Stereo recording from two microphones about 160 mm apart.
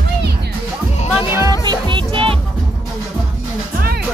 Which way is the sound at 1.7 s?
30° right (ahead or behind).